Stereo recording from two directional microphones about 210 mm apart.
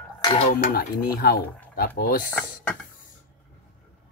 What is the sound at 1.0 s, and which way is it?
Speech, 45° left (ahead or behind).